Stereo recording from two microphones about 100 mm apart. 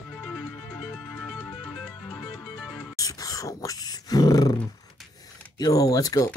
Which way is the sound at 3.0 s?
35° left (ahead or behind).